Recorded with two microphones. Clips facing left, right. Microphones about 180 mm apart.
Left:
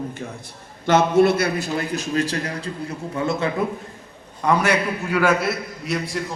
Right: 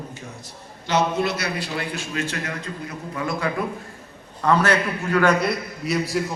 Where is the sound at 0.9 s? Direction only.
50° left (ahead or behind); by 3.5 s 25° left (ahead or behind).